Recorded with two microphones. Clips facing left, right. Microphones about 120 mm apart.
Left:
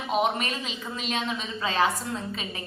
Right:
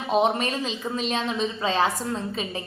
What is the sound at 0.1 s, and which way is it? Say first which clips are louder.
A woman's voice: right 4 dB; 30° right (ahead or behind).